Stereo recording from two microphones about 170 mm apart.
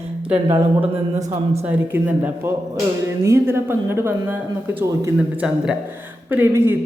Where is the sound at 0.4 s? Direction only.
30° right (ahead or behind).